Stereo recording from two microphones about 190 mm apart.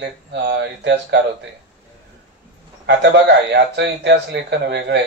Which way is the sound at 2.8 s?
65° right (ahead or behind).